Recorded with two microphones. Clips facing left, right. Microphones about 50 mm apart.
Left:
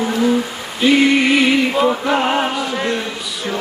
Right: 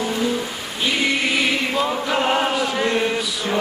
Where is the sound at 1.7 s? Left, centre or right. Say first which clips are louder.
Left 5 dB; centre.